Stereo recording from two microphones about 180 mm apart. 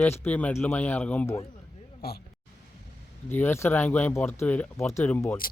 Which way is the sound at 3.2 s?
10° left (ahead or behind).